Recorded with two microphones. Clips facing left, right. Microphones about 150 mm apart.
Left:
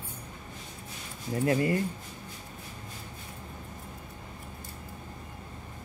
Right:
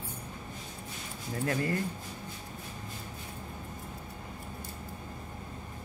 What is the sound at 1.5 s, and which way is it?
Speech, 15° left (ahead or behind).